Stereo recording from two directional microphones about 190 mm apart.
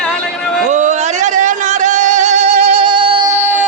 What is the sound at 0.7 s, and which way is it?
Music, 40° right (ahead or behind).